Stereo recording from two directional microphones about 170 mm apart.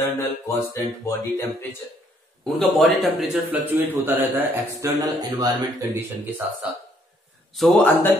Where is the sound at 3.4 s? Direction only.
10° right (ahead or behind).